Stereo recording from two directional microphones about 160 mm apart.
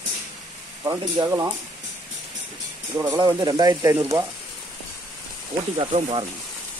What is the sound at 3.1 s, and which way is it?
Speech, 25° right (ahead or behind).